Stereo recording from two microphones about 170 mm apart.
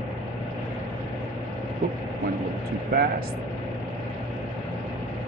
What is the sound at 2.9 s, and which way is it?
Speech, 60° right (ahead or behind).